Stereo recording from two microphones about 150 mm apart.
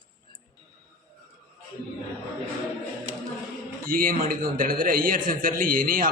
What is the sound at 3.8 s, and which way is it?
A man's voice, 70° right (ahead or behind).